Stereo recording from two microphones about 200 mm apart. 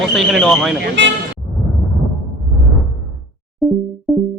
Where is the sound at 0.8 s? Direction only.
60° right (ahead or behind).